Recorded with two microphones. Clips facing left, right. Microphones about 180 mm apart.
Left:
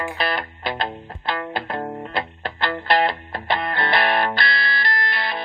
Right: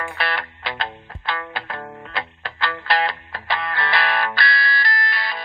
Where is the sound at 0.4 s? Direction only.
45° left (ahead or behind).